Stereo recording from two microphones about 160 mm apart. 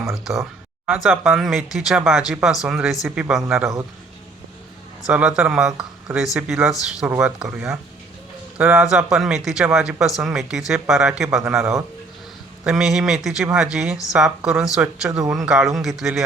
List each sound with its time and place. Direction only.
0.0 s speech: centre (ahead or behind)
3.6 s a man's voice: 20° right (ahead or behind)
5.0 s speech: 5° right (ahead or behind)
12.6 s speech: 5° right (ahead or behind)